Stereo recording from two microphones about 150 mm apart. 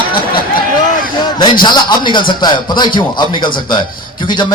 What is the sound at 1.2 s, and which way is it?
A man's voice, 30° left (ahead or behind).